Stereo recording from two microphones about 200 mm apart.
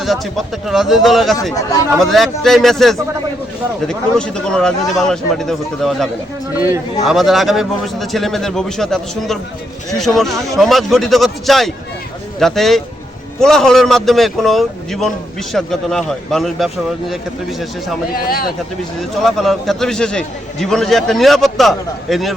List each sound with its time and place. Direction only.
0.0 s a man's voice: centre (ahead or behind)
18.1 s speech: 50° left (ahead or behind)
19.2 s a man's voice: centre (ahead or behind)